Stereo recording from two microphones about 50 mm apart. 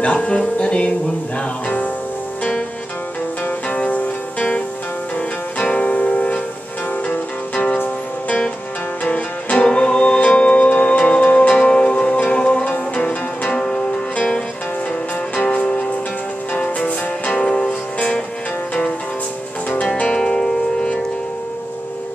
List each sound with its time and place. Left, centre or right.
0.0 s music: left
3.6 s music: left
7.5 s music: left
9.0 s music: left
15.3 s music: left
19.8 s music: left